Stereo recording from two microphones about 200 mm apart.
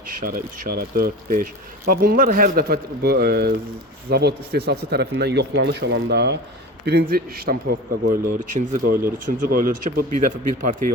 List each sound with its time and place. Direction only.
0.2 s a man's voice: 45° right (ahead or behind)